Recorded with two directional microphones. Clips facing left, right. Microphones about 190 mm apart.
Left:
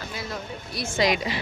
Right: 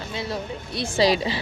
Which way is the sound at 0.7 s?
35° right (ahead or behind).